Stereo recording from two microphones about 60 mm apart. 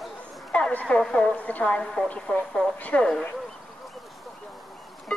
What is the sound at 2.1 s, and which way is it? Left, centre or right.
Speech, left.